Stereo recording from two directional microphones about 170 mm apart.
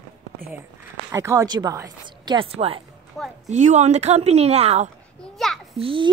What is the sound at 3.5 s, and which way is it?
A woman's voice, 45° right (ahead or behind).